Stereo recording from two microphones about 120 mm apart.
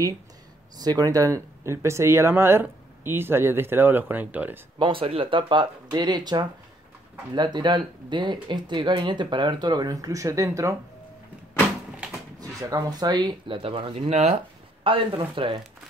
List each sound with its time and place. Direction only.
0.7 s speech: 30° right (ahead or behind); by 4.6 s 15° right (ahead or behind)
4.7 s speech: 45° right (ahead or behind); by 10.8 s 25° right (ahead or behind)
12.4 s speech: 30° right (ahead or behind); by 14.3 s 65° right (ahead or behind)
14.3 s speech: 50° right (ahead or behind)